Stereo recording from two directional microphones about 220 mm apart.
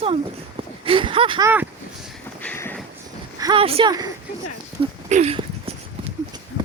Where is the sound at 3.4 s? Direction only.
25° right (ahead or behind).